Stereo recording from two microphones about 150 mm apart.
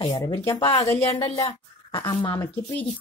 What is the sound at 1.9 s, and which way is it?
Speech, 30° left (ahead or behind).